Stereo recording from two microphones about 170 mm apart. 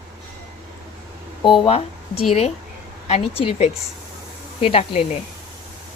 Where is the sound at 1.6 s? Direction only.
35° left (ahead or behind).